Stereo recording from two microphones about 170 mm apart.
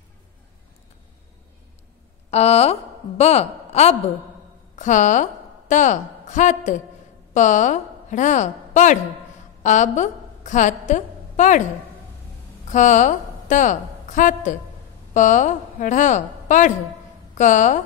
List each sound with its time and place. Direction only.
2.3 s a woman's voice: 40° left (ahead or behind)
12.6 s a woman's voice: 45° left (ahead or behind)